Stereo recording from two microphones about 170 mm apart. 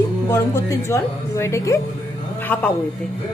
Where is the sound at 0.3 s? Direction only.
15° left (ahead or behind).